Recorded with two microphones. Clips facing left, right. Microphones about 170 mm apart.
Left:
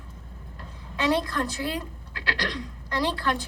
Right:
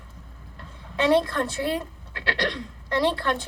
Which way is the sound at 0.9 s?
25° right (ahead or behind).